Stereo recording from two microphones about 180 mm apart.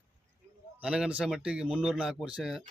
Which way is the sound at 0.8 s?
5° right (ahead or behind).